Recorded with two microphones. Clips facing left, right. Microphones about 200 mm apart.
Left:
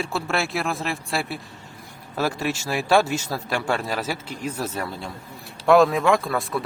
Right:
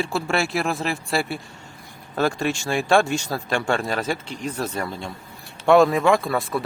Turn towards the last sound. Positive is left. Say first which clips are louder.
# right 1 dB
turn(degrees=0)  # may be behind; listen again after turning